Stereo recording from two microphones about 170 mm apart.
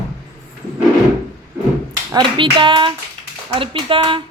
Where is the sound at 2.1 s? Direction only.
25° right (ahead or behind).